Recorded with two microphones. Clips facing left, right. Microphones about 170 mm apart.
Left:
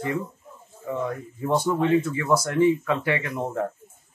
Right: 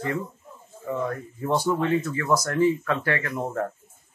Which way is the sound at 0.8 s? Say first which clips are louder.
Even; 10° left (ahead or behind).